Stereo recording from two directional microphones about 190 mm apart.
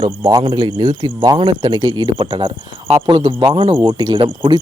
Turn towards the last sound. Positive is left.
turn(degrees=-25)  # may be behind; listen again after turning